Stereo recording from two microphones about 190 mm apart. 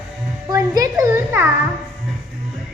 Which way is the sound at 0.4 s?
20° right (ahead or behind).